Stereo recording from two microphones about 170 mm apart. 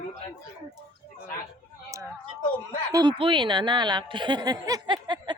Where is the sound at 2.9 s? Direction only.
25° right (ahead or behind).